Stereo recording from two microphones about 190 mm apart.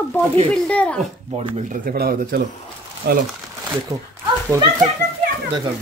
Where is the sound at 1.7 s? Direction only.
50° right (ahead or behind).